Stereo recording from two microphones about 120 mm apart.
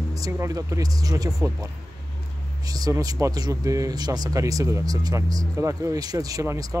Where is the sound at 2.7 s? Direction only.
30° right (ahead or behind).